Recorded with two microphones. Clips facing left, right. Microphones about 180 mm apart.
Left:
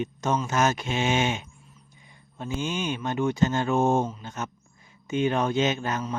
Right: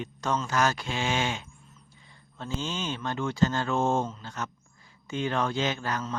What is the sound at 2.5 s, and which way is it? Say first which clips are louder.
Speech: left 4 dB; 15° left (ahead or behind).